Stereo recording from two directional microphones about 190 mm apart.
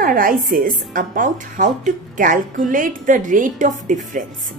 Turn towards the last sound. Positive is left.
turn(degrees=-40)  # may be behind; listen again after turning